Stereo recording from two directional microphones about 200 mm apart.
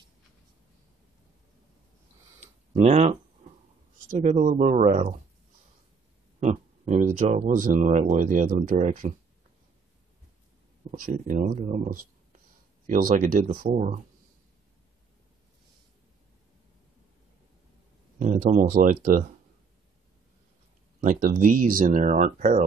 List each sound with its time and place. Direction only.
2.8 s speech: 35° right (ahead or behind)
6.4 s speech: 35° right (ahead or behind)
10.9 s speech: 40° right (ahead or behind)
18.2 s speech: 35° right (ahead or behind)
21.0 s speech: 40° right (ahead or behind)